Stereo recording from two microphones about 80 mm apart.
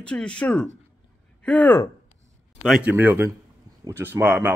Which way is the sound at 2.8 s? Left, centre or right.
Right.